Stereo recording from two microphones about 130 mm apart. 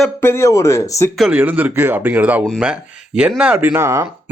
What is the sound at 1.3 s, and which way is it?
Speech, 15° right (ahead or behind).